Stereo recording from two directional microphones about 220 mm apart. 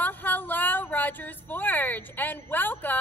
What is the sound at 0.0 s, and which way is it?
Speech, 10° left (ahead or behind).